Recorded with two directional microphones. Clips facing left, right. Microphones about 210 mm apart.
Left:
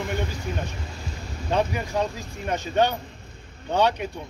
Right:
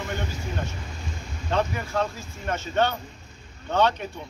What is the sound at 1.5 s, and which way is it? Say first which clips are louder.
Speech: left 2 dB; 15° left (ahead or behind).